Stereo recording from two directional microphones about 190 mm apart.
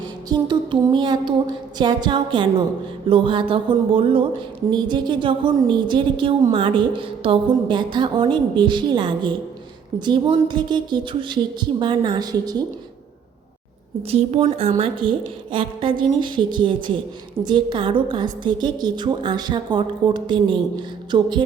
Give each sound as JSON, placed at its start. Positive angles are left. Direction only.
{"t": 0.3, "sound": "a woman's voice", "side_deg": -25}
{"t": 14.1, "sound": "a woman's voice", "side_deg": -35}